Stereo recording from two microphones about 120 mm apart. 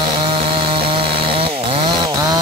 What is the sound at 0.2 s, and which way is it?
Chainsaw, 45° right (ahead or behind).